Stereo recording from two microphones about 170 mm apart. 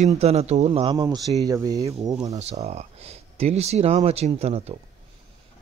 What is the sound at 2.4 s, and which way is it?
Speech, 40° right (ahead or behind).